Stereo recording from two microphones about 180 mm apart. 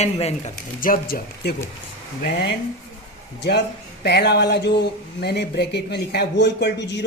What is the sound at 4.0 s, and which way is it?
Speech, 65° left (ahead or behind).